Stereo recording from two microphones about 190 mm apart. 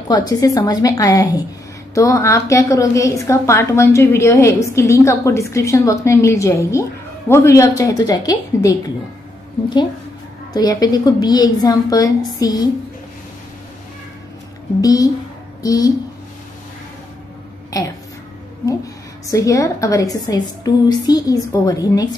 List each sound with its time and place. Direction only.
0.1 s a woman's voice: 20° left (ahead or behind)
10.5 s a woman's voice: 20° left (ahead or behind)
14.8 s a woman's voice: 20° left (ahead or behind)
17.7 s a woman's voice: 20° left (ahead or behind)
19.3 s a woman's voice: 15° left (ahead or behind)